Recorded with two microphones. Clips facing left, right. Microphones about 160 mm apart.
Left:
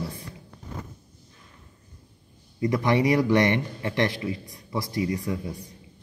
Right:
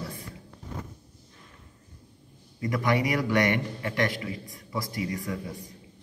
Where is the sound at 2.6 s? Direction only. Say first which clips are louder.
Left 4 dB; 25° left (ahead or behind).